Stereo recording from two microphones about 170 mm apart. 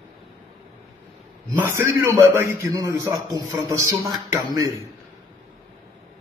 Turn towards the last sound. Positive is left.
turn(degrees=-15)  # may be behind; listen again after turning